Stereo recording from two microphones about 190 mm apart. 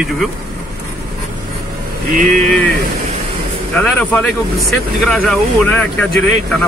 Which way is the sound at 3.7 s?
5° left (ahead or behind).